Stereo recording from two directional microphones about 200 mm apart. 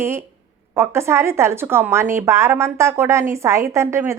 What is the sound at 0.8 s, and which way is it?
A woman's voice, 15° right (ahead or behind).